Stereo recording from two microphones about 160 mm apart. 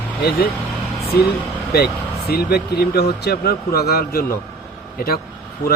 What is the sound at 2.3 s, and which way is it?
A man's voice, 70° left (ahead or behind).